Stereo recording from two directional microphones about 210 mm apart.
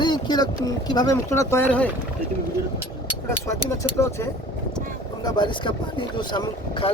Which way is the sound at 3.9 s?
15° left (ahead or behind).